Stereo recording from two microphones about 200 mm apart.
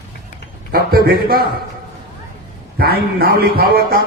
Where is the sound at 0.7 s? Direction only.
50° right (ahead or behind).